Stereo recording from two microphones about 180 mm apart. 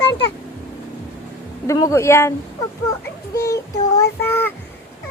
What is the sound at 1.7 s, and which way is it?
Speech, 15° left (ahead or behind).